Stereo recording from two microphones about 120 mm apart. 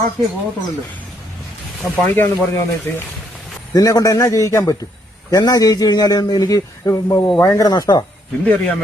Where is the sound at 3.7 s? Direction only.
30° left (ahead or behind).